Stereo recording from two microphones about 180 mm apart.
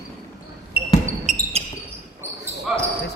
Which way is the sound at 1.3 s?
35° right (ahead or behind).